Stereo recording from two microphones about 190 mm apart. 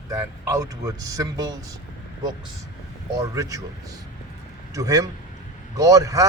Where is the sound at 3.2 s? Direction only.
20° right (ahead or behind).